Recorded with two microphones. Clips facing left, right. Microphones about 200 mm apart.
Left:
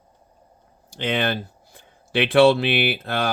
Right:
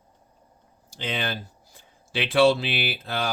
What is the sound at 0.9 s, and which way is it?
Speech, 60° left (ahead or behind).